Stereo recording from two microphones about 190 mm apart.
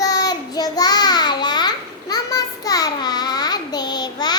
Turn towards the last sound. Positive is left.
turn(degrees=20)  # may be behind; listen again after turning